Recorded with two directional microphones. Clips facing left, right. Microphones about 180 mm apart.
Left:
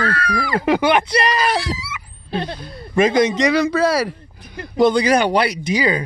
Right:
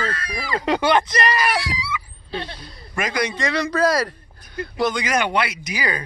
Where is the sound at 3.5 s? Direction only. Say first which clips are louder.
Left 3 dB; 5° left (ahead or behind).